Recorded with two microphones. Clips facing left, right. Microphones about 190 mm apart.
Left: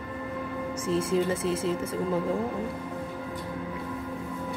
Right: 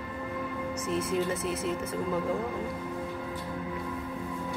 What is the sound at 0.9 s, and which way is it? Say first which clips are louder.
A woman's voice: left 4 dB; 30° left (ahead or behind).